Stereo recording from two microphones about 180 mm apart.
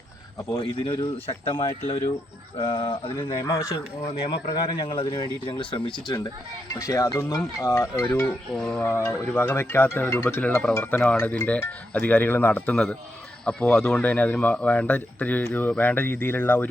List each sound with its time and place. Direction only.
0.4 s speech: 25° left (ahead or behind)
3.4 s speech: 15° left (ahead or behind)
4.0 s speech: 30° left (ahead or behind)
6.7 s speech: 20° left (ahead or behind)